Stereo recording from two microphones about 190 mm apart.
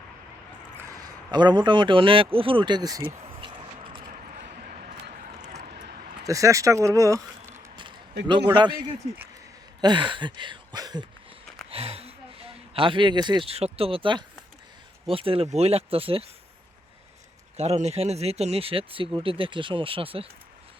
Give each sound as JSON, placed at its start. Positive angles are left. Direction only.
{"t": 0.8, "sound": "a sound", "side_deg": -15}
{"t": 6.2, "sound": "speech", "side_deg": -15}
{"t": 11.7, "sound": "speech", "side_deg": -30}
{"t": 17.6, "sound": "speech", "side_deg": -35}